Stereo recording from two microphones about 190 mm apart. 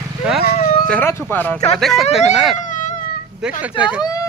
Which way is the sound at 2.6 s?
40° left (ahead or behind).